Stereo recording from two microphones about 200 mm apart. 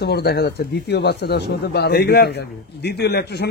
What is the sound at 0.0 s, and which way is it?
Speech, 55° left (ahead or behind).